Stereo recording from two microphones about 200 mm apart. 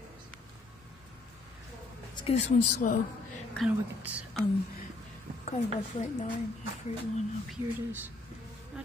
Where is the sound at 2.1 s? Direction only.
30° left (ahead or behind).